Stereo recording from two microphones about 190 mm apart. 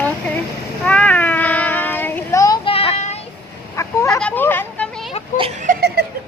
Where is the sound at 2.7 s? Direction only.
35° left (ahead or behind).